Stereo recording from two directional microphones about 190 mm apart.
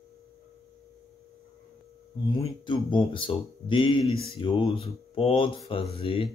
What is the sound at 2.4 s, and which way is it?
Speech, 25° left (ahead or behind).